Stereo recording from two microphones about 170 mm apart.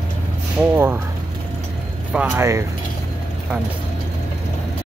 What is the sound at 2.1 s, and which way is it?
Speech, 5° right (ahead or behind).